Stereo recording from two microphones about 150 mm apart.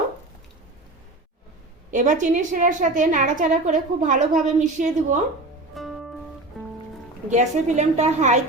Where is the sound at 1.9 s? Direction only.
55° right (ahead or behind).